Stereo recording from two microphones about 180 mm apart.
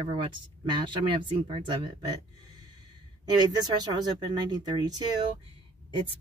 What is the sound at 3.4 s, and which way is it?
Speech, 25° right (ahead or behind).